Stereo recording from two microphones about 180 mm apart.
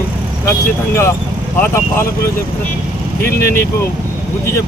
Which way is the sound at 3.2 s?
55° left (ahead or behind).